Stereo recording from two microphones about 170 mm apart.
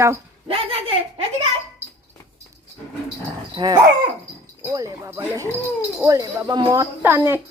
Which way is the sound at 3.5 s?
25° right (ahead or behind).